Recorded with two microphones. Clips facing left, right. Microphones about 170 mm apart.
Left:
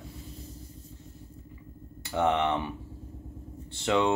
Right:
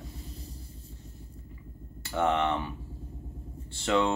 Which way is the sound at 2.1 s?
15° left (ahead or behind).